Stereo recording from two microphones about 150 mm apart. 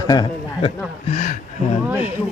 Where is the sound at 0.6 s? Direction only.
50° left (ahead or behind).